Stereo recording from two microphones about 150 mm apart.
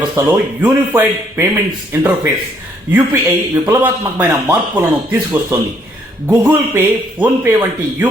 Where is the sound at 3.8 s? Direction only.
10° right (ahead or behind).